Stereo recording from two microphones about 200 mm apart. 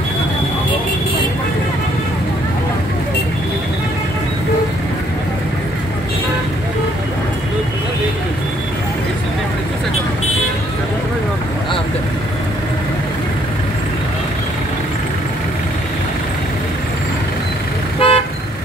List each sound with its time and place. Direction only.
18.0 s vehicle: 30° left (ahead or behind)